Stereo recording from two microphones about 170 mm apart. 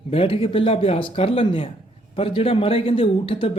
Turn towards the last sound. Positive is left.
turn(degrees=30)  # may be behind; listen again after turning